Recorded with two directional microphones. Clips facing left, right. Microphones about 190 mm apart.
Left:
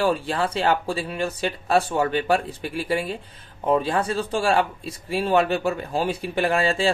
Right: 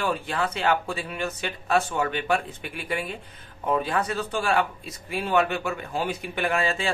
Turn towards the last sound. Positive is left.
turn(degrees=30)  # may be behind; listen again after turning